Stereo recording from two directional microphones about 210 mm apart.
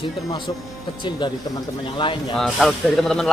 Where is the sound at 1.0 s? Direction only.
20° left (ahead or behind).